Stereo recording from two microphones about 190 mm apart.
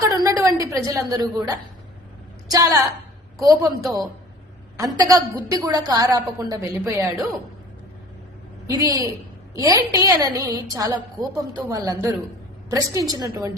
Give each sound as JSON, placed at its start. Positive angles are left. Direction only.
{"t": 0.1, "sound": "a sound", "side_deg": -20}
{"t": 0.9, "sound": "a woman's voice", "side_deg": -20}
{"t": 4.8, "sound": "a woman's voice", "side_deg": -20}
{"t": 8.8, "sound": "a woman's voice", "side_deg": -20}